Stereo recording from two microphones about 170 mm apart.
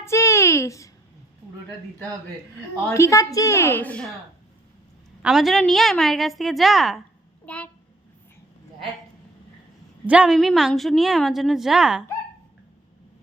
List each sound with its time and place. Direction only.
0.0 s a sound: 15° left (ahead or behind)
2.9 s a woman's voice: 15° left (ahead or behind)
5.2 s a woman's voice: 5° right (ahead or behind)
10.1 s a woman's voice: 5° right (ahead or behind)